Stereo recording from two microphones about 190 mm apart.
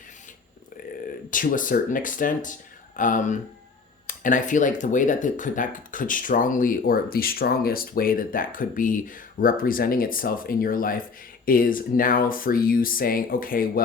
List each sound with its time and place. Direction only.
1.3 s speech: 45° left (ahead or behind)